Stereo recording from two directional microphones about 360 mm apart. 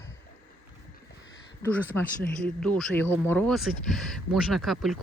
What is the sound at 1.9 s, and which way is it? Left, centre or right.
Speech, centre.